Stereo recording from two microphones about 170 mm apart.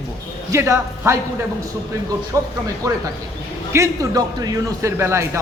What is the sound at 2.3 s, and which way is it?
A man's voice, 20° right (ahead or behind).